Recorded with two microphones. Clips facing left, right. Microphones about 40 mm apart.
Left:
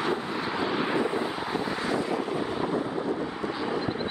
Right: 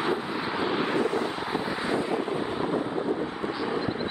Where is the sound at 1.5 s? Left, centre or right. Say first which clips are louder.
Even; centre.